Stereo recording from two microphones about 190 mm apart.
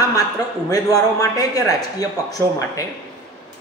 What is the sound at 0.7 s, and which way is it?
A man's voice, 20° left (ahead or behind).